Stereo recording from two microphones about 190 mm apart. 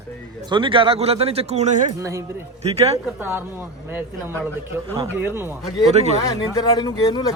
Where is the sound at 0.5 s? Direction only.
25° right (ahead or behind).